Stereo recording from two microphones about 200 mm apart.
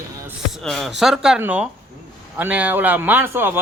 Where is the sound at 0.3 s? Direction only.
Centre (ahead or behind).